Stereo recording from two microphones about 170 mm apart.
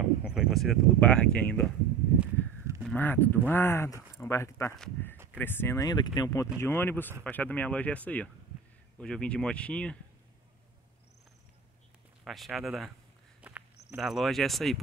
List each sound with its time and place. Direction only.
0.0 s speech: 5° right (ahead or behind)
2.8 s speech: 10° left (ahead or behind)
4.7 s speech: 5° left (ahead or behind)
5.1 s a sound: 10° right (ahead or behind)
5.4 s speech: 10° left (ahead or behind)
12.3 s speech: centre (ahead or behind)
13.4 s walk: 10° right (ahead or behind)
13.9 s speech: centre (ahead or behind)